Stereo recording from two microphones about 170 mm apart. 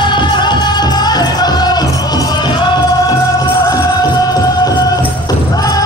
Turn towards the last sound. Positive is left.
turn(degrees=20)  # may be behind; listen again after turning